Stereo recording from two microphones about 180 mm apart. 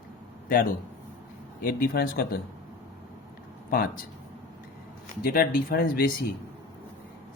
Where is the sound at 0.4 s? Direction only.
50° left (ahead or behind).